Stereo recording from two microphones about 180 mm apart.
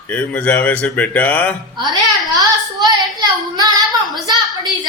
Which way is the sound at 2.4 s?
20° right (ahead or behind).